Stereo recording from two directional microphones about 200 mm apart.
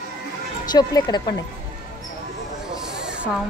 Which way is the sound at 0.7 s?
20° left (ahead or behind).